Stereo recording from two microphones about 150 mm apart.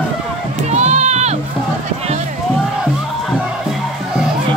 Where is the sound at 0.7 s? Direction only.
50° right (ahead or behind).